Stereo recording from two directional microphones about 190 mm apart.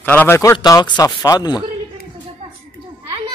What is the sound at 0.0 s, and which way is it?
Speech, 10° left (ahead or behind).